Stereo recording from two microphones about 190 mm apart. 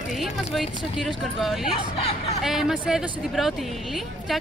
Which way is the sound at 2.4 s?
Centre (ahead or behind).